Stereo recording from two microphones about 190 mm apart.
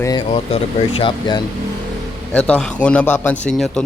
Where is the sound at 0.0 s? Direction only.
20° left (ahead or behind).